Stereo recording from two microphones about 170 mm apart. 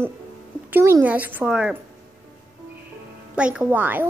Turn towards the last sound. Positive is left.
turn(degrees=-10)  # may be behind; listen again after turning